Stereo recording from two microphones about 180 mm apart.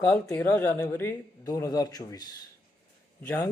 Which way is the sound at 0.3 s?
10° left (ahead or behind).